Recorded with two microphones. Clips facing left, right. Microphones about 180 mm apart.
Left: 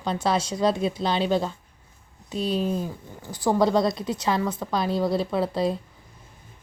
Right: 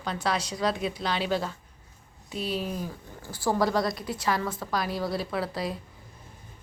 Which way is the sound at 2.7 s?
20° left (ahead or behind).